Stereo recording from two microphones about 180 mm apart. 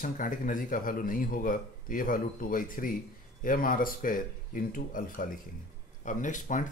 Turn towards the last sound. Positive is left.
turn(degrees=45)  # may be behind; listen again after turning